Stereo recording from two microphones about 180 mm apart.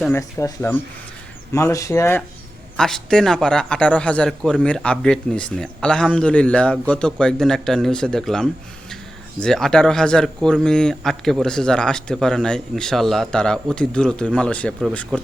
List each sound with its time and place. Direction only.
0.1 s speech: 15° left (ahead or behind)
2.7 s a man's voice: 5° left (ahead or behind)